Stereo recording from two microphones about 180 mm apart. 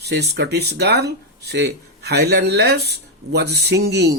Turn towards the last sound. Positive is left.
turn(degrees=-65)  # may be behind; listen again after turning